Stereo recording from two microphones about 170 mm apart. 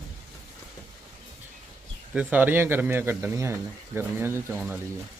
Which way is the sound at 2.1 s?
10° right (ahead or behind).